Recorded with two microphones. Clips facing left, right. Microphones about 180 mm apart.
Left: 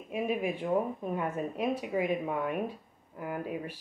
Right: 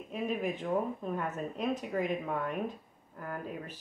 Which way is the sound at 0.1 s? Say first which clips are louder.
Left 3 dB; 10° left (ahead or behind).